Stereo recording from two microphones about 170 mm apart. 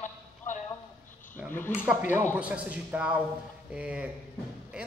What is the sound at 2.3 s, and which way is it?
A man's voice, 10° right (ahead or behind).